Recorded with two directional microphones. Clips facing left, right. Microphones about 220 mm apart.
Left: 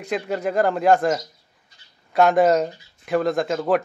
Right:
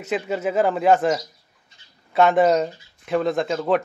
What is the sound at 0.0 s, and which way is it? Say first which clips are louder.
Speech: even; 5° right (ahead or behind).